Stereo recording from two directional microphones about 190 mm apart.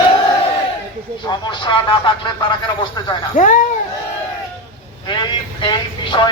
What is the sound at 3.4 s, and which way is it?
Speech, 45° left (ahead or behind).